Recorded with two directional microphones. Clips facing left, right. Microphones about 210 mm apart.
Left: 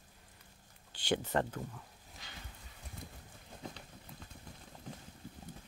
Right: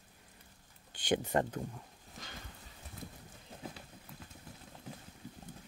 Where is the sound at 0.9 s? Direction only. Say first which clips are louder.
Right 2 dB; 20° right (ahead or behind).